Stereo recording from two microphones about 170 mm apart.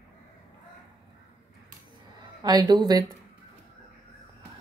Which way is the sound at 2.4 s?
25° right (ahead or behind).